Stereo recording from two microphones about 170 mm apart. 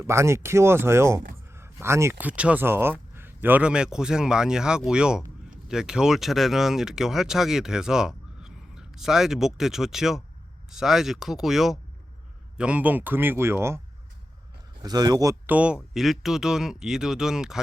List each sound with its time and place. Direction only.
0.0 s speech: 15° right (ahead or behind)
15.5 s speech: 5° right (ahead or behind)